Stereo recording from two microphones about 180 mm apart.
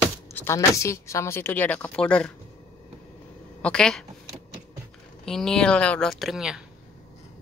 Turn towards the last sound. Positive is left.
turn(degrees=-5)  # may be behind; listen again after turning